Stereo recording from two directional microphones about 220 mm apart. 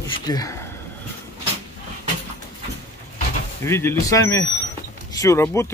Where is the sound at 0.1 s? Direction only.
15° left (ahead or behind).